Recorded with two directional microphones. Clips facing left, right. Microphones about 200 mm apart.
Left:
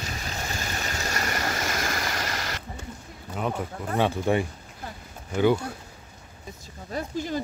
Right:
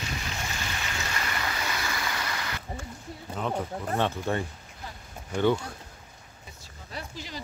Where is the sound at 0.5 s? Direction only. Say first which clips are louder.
Left 3 dB; 40° left (ahead or behind).